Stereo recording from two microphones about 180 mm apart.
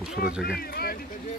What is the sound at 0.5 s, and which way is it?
Speech, 60° left (ahead or behind).